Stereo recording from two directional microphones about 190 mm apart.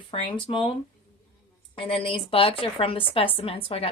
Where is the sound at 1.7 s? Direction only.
30° left (ahead or behind).